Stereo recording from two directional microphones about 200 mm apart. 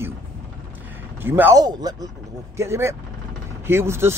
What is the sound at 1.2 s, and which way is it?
Speech, 10° right (ahead or behind).